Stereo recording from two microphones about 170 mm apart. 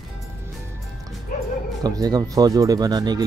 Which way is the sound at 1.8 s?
20° right (ahead or behind).